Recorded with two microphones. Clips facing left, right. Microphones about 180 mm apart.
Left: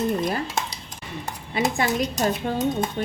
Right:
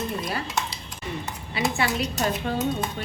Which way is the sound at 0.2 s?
45° left (ahead or behind).